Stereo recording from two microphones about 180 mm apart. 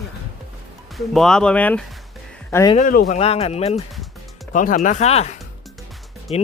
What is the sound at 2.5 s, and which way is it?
Speech, 20° left (ahead or behind).